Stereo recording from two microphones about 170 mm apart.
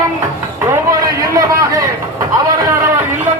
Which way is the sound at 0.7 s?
20° right (ahead or behind).